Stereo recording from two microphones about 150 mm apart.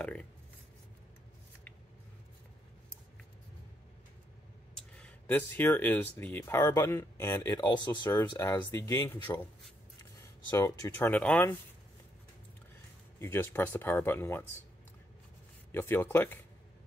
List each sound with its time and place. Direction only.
0.0 s speech: 10° left (ahead or behind)
4.7 s speech: 5° left (ahead or behind); by 8.2 s 30° left (ahead or behind)
8.4 s speech: 20° left (ahead or behind)
10.5 s speech: 20° left (ahead or behind)
13.2 s speech: 15° left (ahead or behind)
15.7 s speech: 15° left (ahead or behind)